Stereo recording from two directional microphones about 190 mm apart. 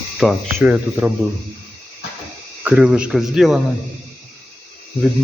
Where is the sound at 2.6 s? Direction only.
5° right (ahead or behind).